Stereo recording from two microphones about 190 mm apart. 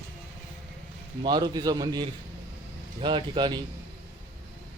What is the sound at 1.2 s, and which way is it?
Speech, 20° right (ahead or behind).